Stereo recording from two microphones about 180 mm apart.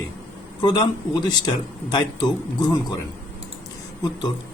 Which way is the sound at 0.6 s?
25° left (ahead or behind).